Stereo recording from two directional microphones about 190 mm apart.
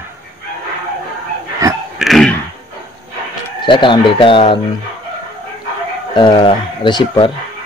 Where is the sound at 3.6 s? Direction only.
25° left (ahead or behind).